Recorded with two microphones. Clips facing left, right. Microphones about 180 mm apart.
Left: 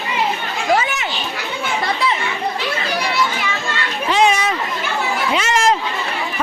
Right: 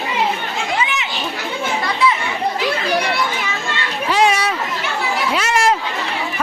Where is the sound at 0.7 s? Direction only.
45° left (ahead or behind).